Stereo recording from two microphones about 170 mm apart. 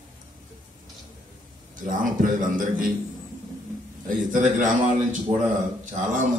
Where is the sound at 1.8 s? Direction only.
50° right (ahead or behind).